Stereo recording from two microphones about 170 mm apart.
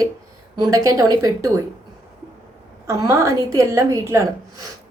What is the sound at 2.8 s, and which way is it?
A woman's voice, 20° right (ahead or behind).